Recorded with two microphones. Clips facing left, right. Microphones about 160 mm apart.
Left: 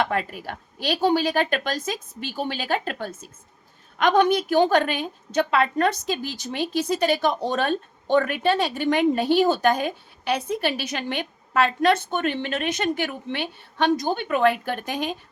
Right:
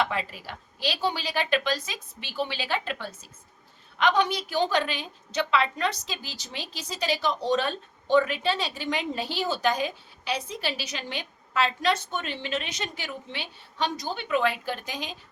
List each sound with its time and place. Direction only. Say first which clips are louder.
0.0 s a woman's voice: left 4 dB; 55° left (ahead or behind)